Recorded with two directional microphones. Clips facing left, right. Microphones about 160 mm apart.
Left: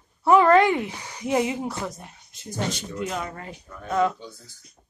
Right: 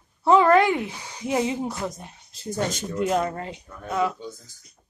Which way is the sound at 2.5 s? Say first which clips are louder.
Right 3 dB; 45° right (ahead or behind).